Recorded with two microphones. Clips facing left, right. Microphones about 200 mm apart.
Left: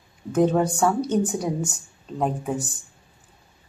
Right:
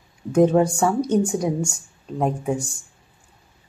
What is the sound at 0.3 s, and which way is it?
Speech, 10° right (ahead or behind).